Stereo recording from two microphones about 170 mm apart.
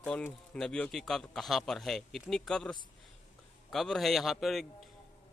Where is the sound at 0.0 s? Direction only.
5° left (ahead or behind).